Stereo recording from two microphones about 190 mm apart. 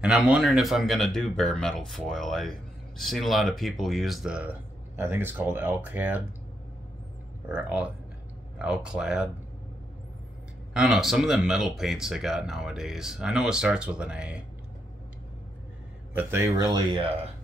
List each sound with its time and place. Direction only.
0.0 s speech: 5° right (ahead or behind)
7.4 s speech: 5° right (ahead or behind)
10.7 s speech: centre (ahead or behind)
16.2 s speech: 15° right (ahead or behind)